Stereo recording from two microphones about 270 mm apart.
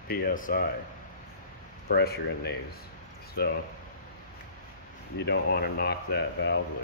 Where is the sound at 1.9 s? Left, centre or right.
Left.